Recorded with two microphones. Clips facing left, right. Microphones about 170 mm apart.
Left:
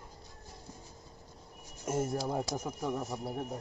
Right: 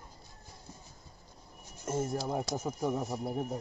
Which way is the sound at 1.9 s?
10° left (ahead or behind).